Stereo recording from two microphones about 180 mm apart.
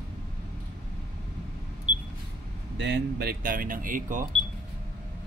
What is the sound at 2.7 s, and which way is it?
Speech, 75° right (ahead or behind).